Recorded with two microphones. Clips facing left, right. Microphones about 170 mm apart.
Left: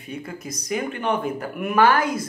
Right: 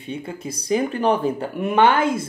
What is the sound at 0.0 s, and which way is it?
Speech, 30° right (ahead or behind).